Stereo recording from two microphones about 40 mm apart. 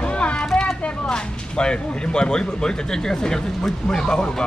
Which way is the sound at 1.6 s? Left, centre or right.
Left.